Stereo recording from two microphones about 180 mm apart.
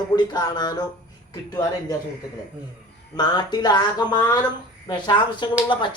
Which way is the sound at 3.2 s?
25° left (ahead or behind).